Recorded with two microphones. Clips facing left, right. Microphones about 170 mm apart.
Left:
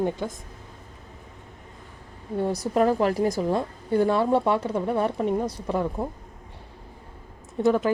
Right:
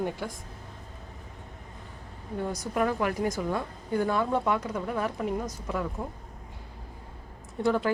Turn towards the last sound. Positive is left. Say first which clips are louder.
# left 5 dB
turn(degrees=20)  # may be behind; listen again after turning